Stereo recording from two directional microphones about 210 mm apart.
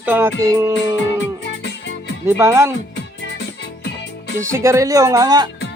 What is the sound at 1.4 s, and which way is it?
Music, 55° left (ahead or behind).